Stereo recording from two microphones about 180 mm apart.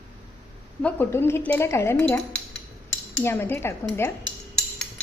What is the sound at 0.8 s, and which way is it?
Speech, 10° left (ahead or behind).